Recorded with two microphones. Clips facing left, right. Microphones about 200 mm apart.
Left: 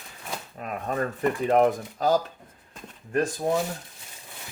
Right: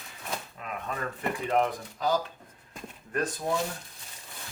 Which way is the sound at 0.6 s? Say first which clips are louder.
Left 10 dB; 40° left (ahead or behind).